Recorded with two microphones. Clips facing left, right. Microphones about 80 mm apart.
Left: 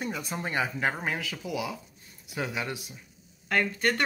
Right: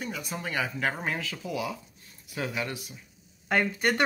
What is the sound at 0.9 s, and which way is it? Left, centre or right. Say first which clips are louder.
Speech: even; centre.